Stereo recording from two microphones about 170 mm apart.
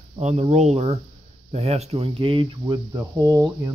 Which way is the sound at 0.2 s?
40° right (ahead or behind).